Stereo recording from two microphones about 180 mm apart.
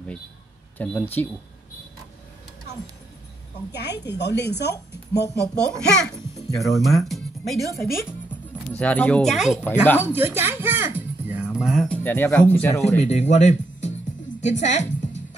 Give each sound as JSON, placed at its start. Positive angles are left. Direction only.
{"t": 0.7, "sound": "speech", "side_deg": 10}
{"t": 3.7, "sound": "speech", "side_deg": 65}
{"t": 5.6, "sound": "a child's voice", "side_deg": 5}
{"t": 7.1, "sound": "music", "side_deg": 0}
{"t": 7.7, "sound": "speech", "side_deg": 15}
{"t": 9.6, "sound": "speech", "side_deg": 10}
{"t": 9.9, "sound": "speech", "side_deg": -10}
{"t": 12.8, "sound": "speech", "side_deg": 40}
{"t": 14.4, "sound": "music", "side_deg": 40}